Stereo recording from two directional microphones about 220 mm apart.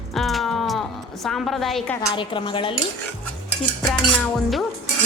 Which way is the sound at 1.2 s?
Centre (ahead or behind).